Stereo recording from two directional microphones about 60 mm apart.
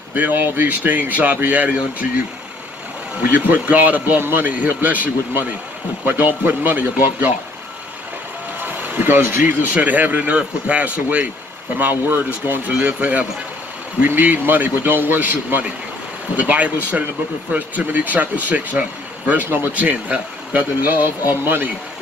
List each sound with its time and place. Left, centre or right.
0.1 s speech: right
3.2 s a man's voice: right
8.8 s speech: right
9.6 s a man's voice: right